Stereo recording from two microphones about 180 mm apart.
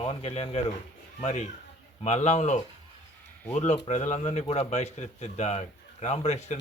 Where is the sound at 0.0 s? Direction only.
35° left (ahead or behind).